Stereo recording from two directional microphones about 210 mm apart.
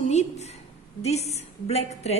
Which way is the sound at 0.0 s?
30° left (ahead or behind).